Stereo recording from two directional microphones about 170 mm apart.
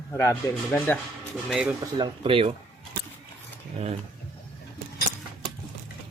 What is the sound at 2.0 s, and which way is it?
Speech, 30° right (ahead or behind).